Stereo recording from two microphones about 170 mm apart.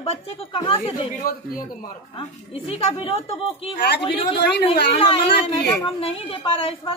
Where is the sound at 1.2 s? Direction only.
55° left (ahead or behind).